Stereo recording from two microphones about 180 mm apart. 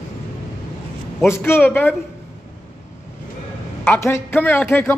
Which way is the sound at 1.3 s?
15° left (ahead or behind).